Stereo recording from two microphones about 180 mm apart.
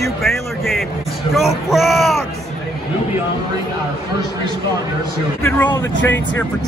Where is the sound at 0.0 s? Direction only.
Centre (ahead or behind).